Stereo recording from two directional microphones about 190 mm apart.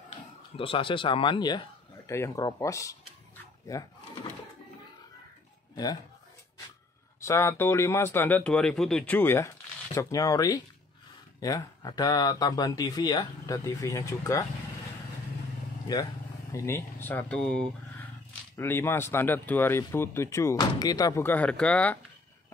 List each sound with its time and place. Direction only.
0.1 s speech: 30° left (ahead or behind)
7.2 s speech: 15° left (ahead or behind)
15.9 s speech: 20° left (ahead or behind)